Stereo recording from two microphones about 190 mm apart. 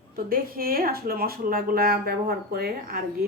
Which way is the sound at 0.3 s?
50° right (ahead or behind).